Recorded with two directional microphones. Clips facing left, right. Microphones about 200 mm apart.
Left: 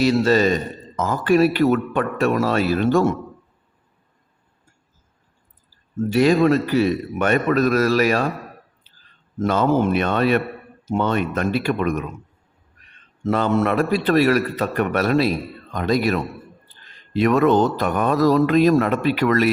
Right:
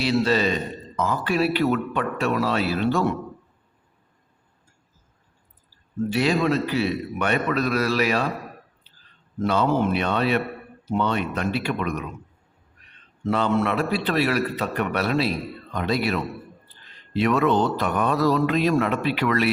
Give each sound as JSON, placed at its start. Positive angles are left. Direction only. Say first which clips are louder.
{"t": 0.0, "sound": "a man's voice", "louder": "left 5 dB", "side_deg": 45}
{"t": 6.1, "sound": "a man's voice", "louder": "left 6 dB", "side_deg": 45}
{"t": 9.4, "sound": "a man's voice", "louder": "left 3 dB", "side_deg": 45}
{"t": 13.2, "sound": "a man's voice", "louder": "left 3 dB", "side_deg": 45}